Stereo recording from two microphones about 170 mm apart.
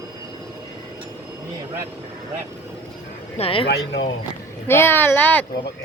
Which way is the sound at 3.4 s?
30° left (ahead or behind).